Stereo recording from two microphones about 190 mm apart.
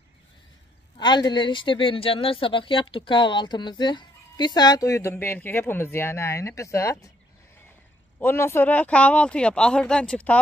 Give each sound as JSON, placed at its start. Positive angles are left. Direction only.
{"t": 0.9, "sound": "speech", "side_deg": 25}
{"t": 8.2, "sound": "speech", "side_deg": 10}